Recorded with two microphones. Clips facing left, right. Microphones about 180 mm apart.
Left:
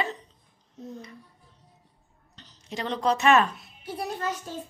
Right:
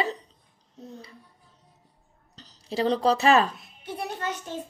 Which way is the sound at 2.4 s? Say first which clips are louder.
Right 7 dB; 35° right (ahead or behind).